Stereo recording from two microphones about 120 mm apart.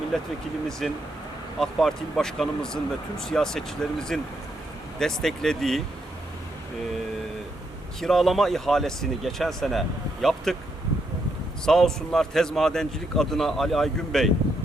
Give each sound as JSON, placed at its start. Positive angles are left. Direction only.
{"t": 0.1, "sound": "speech", "side_deg": 5}
{"t": 8.0, "sound": "speech", "side_deg": 0}
{"t": 11.6, "sound": "speech", "side_deg": 5}